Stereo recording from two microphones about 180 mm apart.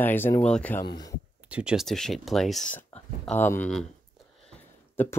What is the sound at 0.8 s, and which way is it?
Speech, 20° left (ahead or behind).